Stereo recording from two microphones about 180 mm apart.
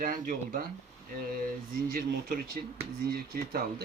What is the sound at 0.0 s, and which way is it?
Speech, 50° right (ahead or behind).